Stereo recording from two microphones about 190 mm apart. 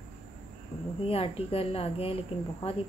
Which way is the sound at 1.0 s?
30° left (ahead or behind).